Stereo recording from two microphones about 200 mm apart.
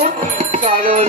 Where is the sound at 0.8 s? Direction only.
40° right (ahead or behind).